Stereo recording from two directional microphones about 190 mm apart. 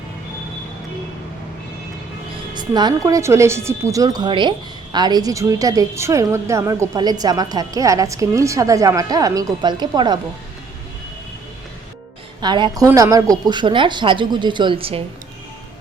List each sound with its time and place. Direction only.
2.6 s speech: 20° right (ahead or behind)
12.4 s speech: 25° right (ahead or behind)